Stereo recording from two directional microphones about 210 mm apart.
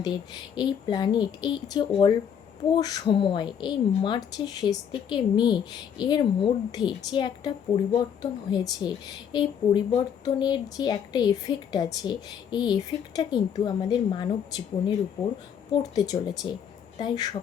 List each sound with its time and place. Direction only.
0.0 s speech: 20° left (ahead or behind)